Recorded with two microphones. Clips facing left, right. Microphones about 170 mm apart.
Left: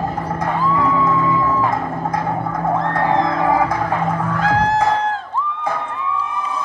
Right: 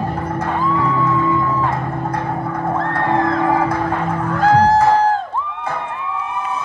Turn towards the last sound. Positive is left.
turn(degrees=-35)  # may be behind; listen again after turning